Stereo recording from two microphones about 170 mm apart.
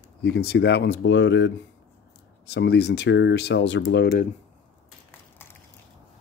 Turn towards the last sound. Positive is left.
turn(degrees=10)  # may be behind; listen again after turning